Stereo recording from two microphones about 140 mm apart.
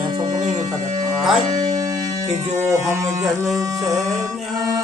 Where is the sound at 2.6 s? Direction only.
20° right (ahead or behind).